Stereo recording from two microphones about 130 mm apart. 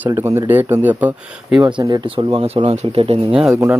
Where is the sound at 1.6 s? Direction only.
30° right (ahead or behind).